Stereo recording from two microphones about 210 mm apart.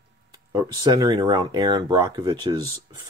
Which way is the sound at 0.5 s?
20° right (ahead or behind).